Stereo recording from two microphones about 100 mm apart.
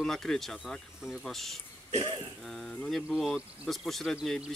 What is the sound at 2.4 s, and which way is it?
Speech, 5° left (ahead or behind).